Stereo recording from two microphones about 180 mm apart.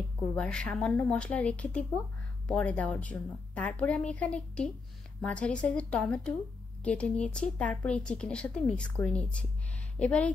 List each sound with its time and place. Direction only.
0.4 s a woman's voice: 5° left (ahead or behind)